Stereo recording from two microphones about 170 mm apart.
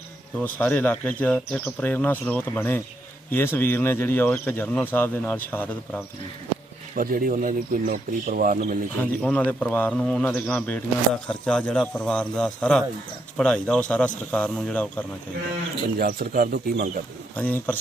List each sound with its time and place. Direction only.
0.3 s speech: 10° left (ahead or behind)
6.9 s speech: 55° right (ahead or behind)
9.0 s speech: 10° left (ahead or behind)
16.0 s speech: 60° right (ahead or behind)
17.3 s speech: 10° left (ahead or behind)